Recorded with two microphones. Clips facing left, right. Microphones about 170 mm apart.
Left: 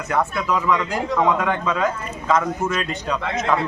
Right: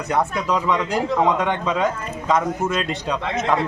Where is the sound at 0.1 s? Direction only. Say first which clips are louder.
Even; 15° right (ahead or behind).